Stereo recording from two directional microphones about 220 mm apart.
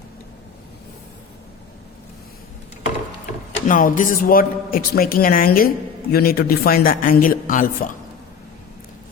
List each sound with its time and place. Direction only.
3.5 s a man's voice: 35° left (ahead or behind)